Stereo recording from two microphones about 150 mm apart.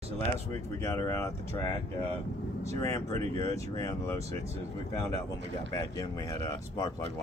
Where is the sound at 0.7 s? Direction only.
20° left (ahead or behind).